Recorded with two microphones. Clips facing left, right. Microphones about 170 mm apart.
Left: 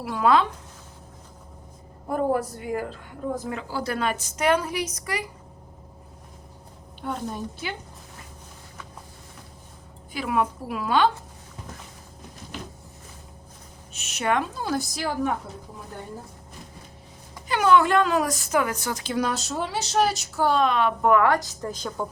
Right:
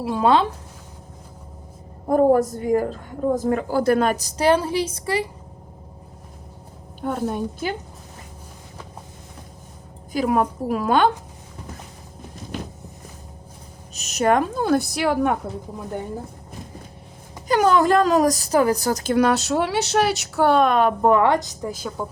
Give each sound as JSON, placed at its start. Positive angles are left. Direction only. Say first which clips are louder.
{"t": 0.0, "sound": "speech", "louder": "right 3 dB", "side_deg": -25}
{"t": 2.0, "sound": "a woman's voice", "louder": "right 8 dB", "side_deg": -40}
{"t": 7.0, "sound": "a woman's voice", "louder": "right 6 dB", "side_deg": -50}
{"t": 10.1, "sound": "a woman's voice", "louder": "right 5 dB", "side_deg": -40}
{"t": 13.9, "sound": "a woman's voice", "louder": "right 6 dB", "side_deg": -40}
{"t": 17.5, "sound": "a woman's voice", "louder": "right 3 dB", "side_deg": -40}
{"t": 19.1, "sound": "a woman's voice", "louder": "right 8 dB", "side_deg": -65}
{"t": 21.1, "sound": "speech", "louder": "even", "side_deg": -25}
{"t": 21.6, "sound": "a woman's voice", "louder": "right 2 dB", "side_deg": -5}